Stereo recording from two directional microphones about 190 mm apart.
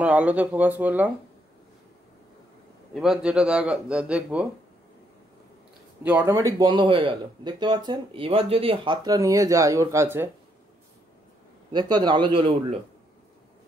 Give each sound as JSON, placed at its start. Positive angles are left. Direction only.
{"t": 0.0, "sound": "speech", "side_deg": -5}
{"t": 2.9, "sound": "speech", "side_deg": 0}
{"t": 6.0, "sound": "speech", "side_deg": -10}
{"t": 11.7, "sound": "speech", "side_deg": -25}